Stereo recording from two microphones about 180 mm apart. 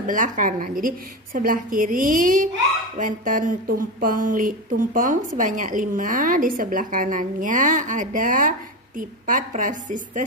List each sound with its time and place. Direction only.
0.0 s speech: 45° right (ahead or behind)